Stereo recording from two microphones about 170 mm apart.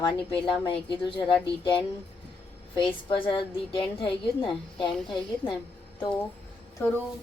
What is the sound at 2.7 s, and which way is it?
A woman's voice, 30° left (ahead or behind).